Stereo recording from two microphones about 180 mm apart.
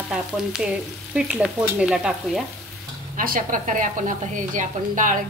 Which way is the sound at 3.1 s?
50° right (ahead or behind).